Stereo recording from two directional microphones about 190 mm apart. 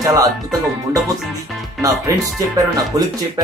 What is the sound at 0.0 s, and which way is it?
Speech, 20° right (ahead or behind).